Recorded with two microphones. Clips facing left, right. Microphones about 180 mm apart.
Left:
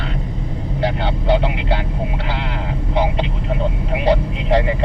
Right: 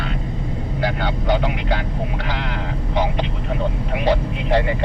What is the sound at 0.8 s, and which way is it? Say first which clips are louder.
Vehicle: left 2 dB; 30° left (ahead or behind).